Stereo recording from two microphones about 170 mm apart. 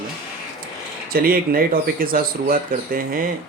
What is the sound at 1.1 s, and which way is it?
Speech, 60° right (ahead or behind).